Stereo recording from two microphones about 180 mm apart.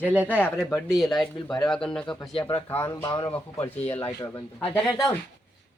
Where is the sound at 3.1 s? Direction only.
30° left (ahead or behind).